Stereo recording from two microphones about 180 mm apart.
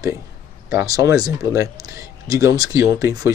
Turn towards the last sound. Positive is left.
turn(degrees=-15)  # may be behind; listen again after turning